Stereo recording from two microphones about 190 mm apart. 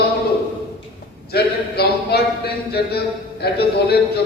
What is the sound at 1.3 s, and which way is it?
A man's voice, 55° left (ahead or behind).